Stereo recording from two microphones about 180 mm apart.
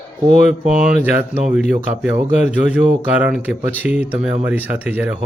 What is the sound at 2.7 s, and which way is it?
Speech, 5° right (ahead or behind).